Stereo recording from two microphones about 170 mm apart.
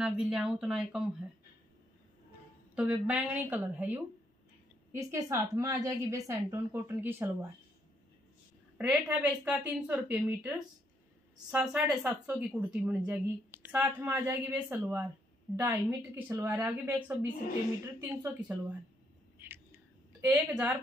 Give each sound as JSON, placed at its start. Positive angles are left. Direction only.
{"t": 0.0, "sound": "speech", "side_deg": -5}
{"t": 2.7, "sound": "a woman's voice", "side_deg": -10}
{"t": 8.7, "sound": "a woman's voice", "side_deg": -5}
{"t": 18.2, "sound": "a woman's voice", "side_deg": -10}
{"t": 19.4, "sound": "a sound", "side_deg": -15}